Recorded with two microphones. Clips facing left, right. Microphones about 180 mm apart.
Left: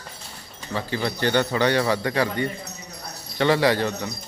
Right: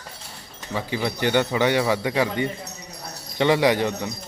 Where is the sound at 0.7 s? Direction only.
15° right (ahead or behind).